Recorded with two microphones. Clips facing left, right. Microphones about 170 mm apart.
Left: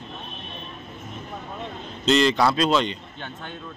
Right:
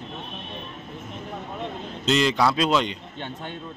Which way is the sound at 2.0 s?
5° right (ahead or behind).